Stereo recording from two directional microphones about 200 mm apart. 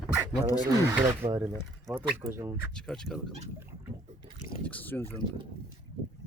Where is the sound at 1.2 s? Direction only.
25° right (ahead or behind).